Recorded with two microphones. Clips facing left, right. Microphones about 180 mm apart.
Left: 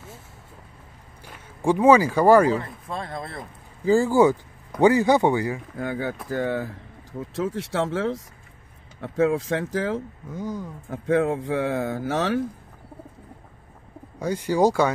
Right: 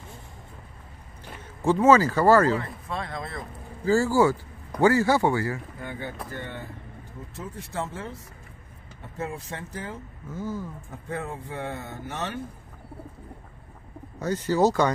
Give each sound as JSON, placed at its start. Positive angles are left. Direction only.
{"t": 1.2, "sound": "speech", "side_deg": 15}
{"t": 3.1, "sound": "speech", "side_deg": 30}
{"t": 5.8, "sound": "speech", "side_deg": 90}
{"t": 10.3, "sound": "speech", "side_deg": 15}
{"t": 10.9, "sound": "speech", "side_deg": 90}
{"t": 14.2, "sound": "speech", "side_deg": 10}